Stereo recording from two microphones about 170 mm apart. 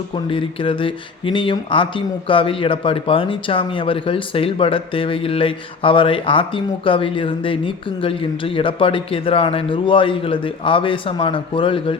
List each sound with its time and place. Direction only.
0.3 s speech: 30° left (ahead or behind)